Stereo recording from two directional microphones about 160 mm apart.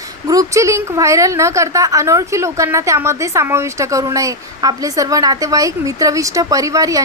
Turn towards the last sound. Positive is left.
turn(degrees=-20)  # may be behind; listen again after turning